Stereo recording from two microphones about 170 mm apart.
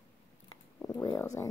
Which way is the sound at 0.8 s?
20° left (ahead or behind).